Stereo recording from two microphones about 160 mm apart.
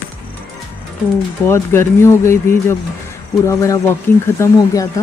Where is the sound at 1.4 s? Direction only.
15° left (ahead or behind).